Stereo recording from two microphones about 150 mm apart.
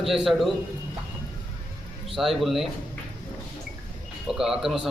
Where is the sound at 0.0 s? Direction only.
Centre (ahead or behind).